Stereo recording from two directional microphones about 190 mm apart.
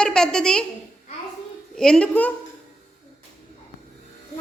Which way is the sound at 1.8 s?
5° left (ahead or behind).